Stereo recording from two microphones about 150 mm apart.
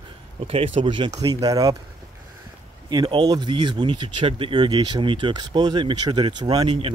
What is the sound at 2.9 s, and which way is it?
Speech, 30° right (ahead or behind).